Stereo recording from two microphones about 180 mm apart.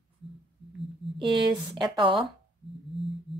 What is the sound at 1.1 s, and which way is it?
Speech, 25° right (ahead or behind).